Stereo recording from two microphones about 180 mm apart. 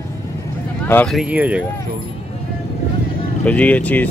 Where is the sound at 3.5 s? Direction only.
5° left (ahead or behind).